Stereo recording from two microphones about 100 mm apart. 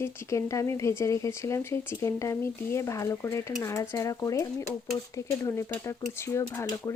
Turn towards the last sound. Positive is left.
turn(degrees=35)  # may be behind; listen again after turning